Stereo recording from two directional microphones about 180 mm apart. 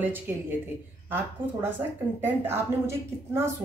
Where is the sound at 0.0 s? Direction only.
10° right (ahead or behind).